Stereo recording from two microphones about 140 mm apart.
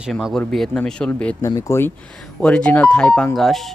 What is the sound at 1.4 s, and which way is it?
Speech, 25° left (ahead or behind).